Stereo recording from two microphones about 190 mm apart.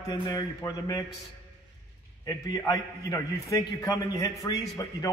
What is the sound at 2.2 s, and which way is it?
A man's voice, 20° left (ahead or behind).